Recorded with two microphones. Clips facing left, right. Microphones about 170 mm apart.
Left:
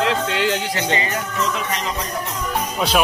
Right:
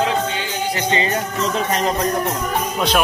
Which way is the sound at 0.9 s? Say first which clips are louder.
Right 3 dB; 30° right (ahead or behind).